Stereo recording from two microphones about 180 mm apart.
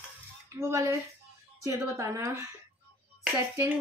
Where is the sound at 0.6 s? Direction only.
15° right (ahead or behind).